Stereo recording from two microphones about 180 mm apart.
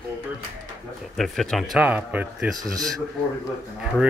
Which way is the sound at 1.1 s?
Centre (ahead or behind).